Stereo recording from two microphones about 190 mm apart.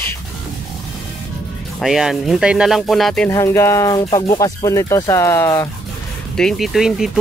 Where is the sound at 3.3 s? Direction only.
15° left (ahead or behind).